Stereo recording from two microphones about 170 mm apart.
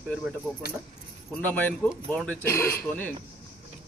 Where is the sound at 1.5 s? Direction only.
10° left (ahead or behind).